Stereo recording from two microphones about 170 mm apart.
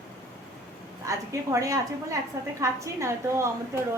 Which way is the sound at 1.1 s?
20° right (ahead or behind).